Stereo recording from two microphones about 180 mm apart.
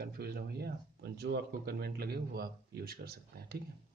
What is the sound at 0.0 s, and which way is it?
Speech, 60° right (ahead or behind).